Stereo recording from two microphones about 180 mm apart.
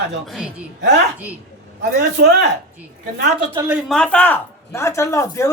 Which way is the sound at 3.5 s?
10° right (ahead or behind).